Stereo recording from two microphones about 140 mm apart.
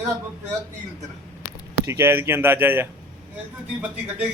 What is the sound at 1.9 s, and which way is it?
Speech, 15° right (ahead or behind).